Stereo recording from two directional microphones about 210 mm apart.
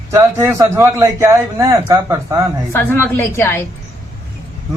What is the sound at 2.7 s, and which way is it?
Speech, 10° left (ahead or behind).